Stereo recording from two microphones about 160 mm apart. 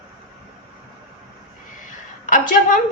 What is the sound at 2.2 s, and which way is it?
Speech, 55° left (ahead or behind).